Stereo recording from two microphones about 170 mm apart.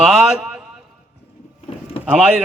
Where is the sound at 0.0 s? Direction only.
5° right (ahead or behind).